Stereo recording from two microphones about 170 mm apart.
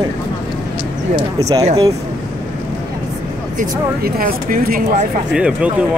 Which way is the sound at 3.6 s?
60° right (ahead or behind).